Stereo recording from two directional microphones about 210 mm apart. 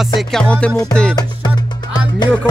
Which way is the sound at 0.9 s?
5° left (ahead or behind).